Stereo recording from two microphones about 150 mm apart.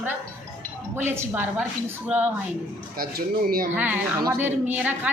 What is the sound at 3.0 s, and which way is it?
Speech, 80° right.